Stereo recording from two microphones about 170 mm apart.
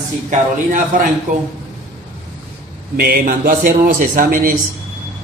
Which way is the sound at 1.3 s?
50° right (ahead or behind).